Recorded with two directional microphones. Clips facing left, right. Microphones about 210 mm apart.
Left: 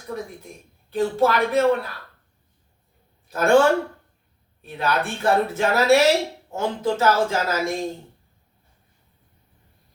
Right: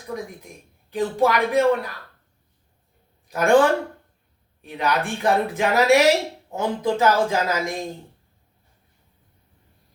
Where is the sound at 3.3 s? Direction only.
15° right (ahead or behind).